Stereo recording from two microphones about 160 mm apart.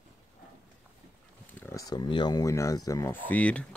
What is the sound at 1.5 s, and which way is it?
Speech, 15° left (ahead or behind).